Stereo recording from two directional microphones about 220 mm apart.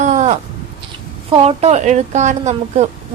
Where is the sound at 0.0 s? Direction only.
35° right (ahead or behind).